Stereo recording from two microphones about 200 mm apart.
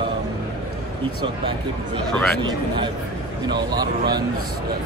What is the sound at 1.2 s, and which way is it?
Speech, 25° right (ahead or behind).